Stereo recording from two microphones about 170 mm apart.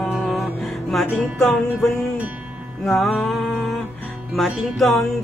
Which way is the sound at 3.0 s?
Centre (ahead or behind).